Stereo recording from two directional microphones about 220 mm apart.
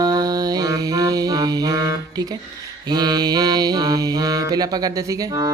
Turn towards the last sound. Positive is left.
turn(degrees=-15)  # may be behind; listen again after turning